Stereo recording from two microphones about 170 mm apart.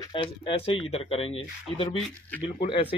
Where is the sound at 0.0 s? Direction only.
30° left (ahead or behind).